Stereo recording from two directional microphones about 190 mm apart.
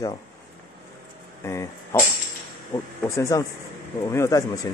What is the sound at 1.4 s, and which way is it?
Speech, 15° left (ahead or behind).